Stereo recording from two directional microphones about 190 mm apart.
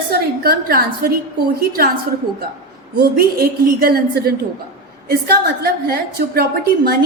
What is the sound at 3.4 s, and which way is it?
A woman's voice, 55° right (ahead or behind).